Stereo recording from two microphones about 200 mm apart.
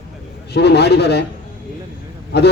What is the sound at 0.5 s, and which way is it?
Speech, 55° left (ahead or behind).